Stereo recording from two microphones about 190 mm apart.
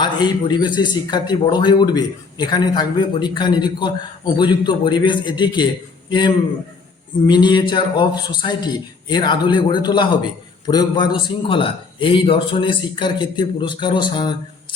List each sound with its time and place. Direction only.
0.0 s a man's voice: 25° left (ahead or behind)